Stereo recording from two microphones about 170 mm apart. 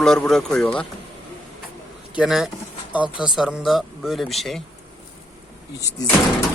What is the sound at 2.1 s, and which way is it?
Speech, 5° right (ahead or behind).